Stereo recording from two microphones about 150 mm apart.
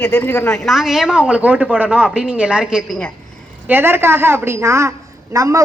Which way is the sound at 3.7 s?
15° right (ahead or behind).